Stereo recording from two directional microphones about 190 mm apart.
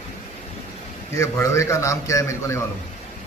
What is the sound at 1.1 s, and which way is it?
A man's voice, 15° left (ahead or behind).